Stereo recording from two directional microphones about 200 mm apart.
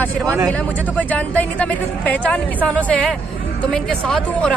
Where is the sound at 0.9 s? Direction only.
5° left (ahead or behind).